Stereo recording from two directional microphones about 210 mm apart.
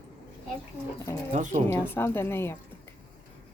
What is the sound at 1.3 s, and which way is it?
Speech, 35° right (ahead or behind).